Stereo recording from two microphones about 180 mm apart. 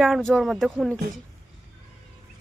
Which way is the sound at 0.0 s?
Centre (ahead or behind).